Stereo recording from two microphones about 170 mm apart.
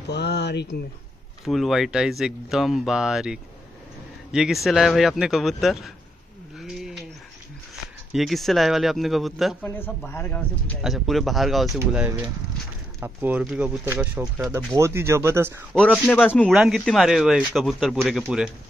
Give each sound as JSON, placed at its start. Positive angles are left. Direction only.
{"t": 0.1, "sound": "speech", "side_deg": 85}
{"t": 1.4, "sound": "speech", "side_deg": 0}
{"t": 6.6, "sound": "a sound", "side_deg": 0}
{"t": 8.1, "sound": "speech", "side_deg": 0}
{"t": 9.6, "sound": "speech", "side_deg": 15}
{"t": 10.8, "sound": "speech", "side_deg": 0}
{"t": 15.7, "sound": "speech", "side_deg": 5}
{"t": 16.5, "sound": "speech", "side_deg": -5}